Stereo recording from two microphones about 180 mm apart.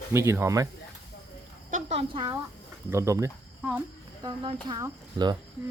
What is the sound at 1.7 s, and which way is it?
Speech, 35° right (ahead or behind).